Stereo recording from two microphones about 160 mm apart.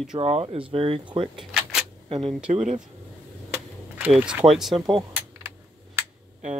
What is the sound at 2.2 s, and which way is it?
Speech, 5° right (ahead or behind).